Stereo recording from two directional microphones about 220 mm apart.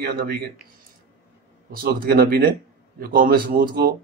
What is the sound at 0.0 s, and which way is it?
Speech, 45° right (ahead or behind).